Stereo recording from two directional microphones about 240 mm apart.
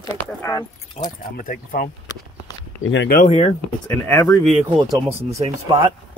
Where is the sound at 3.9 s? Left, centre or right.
Centre.